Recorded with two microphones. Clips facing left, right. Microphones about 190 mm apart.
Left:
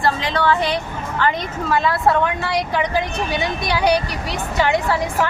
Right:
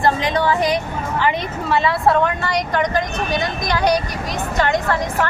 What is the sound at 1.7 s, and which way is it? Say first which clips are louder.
A woman's voice: right 1 dB; centre (ahead or behind).